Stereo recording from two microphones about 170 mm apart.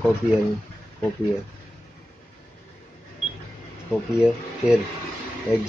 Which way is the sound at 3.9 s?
5° right (ahead or behind).